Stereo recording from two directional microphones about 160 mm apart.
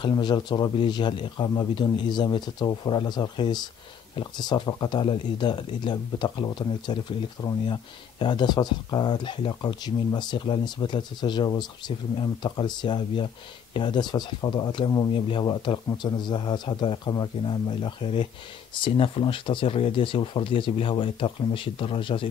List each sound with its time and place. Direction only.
0.0 s speech: 25° left (ahead or behind)